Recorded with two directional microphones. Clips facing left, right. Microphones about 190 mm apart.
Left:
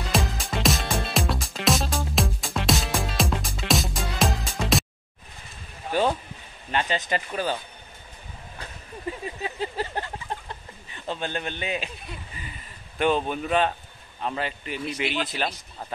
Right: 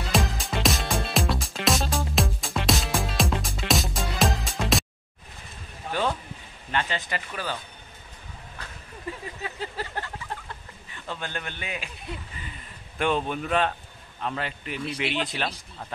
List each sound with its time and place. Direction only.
0.1 s music: centre (ahead or behind)
6.7 s a man's voice: 20° left (ahead or behind)
9.2 s a sound: 20° left (ahead or behind)
11.1 s a man's voice: 20° left (ahead or behind)
13.0 s speech: centre (ahead or behind)